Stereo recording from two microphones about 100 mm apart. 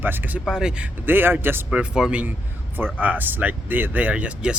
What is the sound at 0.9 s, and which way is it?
Speech, 20° right (ahead or behind).